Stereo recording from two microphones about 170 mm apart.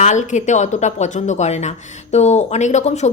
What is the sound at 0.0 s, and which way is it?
A woman's voice, 45° left (ahead or behind).